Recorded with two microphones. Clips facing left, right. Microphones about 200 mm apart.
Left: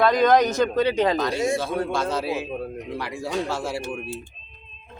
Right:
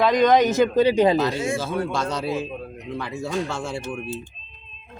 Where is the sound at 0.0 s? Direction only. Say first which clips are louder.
Right 1 dB; centre (ahead or behind).